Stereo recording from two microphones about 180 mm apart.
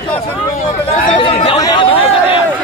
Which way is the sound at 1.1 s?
30° left (ahead or behind).